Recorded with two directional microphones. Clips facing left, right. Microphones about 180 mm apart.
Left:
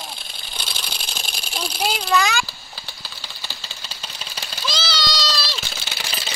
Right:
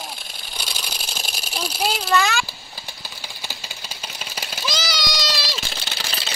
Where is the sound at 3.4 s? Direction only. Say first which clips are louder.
Right 2 dB; 10° right (ahead or behind).